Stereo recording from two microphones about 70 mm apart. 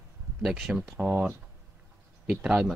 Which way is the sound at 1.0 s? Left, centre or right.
Right.